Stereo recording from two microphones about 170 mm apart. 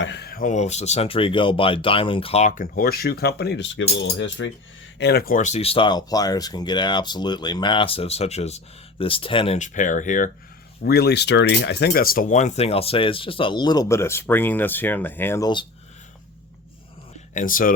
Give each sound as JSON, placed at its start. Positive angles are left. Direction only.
{"t": 0.0, "sound": "speech", "side_deg": 80}
{"t": 4.9, "sound": "speech", "side_deg": 75}
{"t": 9.6, "sound": "speech", "side_deg": 45}
{"t": 10.8, "sound": "speech", "side_deg": 70}
{"t": 17.3, "sound": "speech", "side_deg": 55}